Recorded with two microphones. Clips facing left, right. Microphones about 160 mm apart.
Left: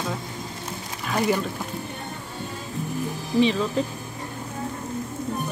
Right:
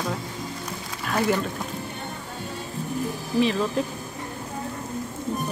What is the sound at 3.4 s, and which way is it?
Speech, 5° right (ahead or behind).